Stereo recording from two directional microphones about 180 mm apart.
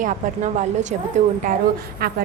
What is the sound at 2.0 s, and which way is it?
Speech, 60° right (ahead or behind).